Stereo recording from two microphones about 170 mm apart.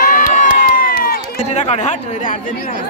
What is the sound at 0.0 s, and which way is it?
Crowd, 55° left (ahead or behind).